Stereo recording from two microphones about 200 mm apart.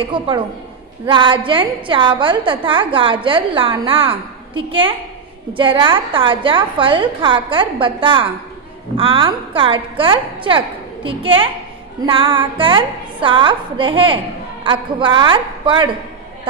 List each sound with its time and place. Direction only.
0.0 s a woman's voice: 25° right (ahead or behind)